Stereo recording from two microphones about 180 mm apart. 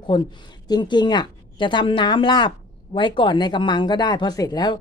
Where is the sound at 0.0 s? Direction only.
25° left (ahead or behind).